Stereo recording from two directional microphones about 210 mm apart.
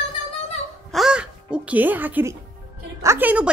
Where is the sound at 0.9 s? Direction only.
Centre (ahead or behind).